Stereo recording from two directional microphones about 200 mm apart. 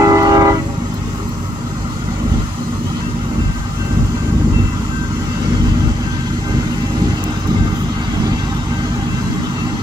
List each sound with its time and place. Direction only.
0.0 s train: 20° right (ahead or behind)